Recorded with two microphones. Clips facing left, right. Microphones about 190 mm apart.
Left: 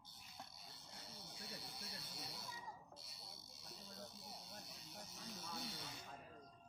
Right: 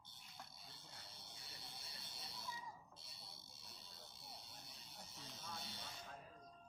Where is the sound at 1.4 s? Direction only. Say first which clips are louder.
Left 7 dB; 60° left (ahead or behind).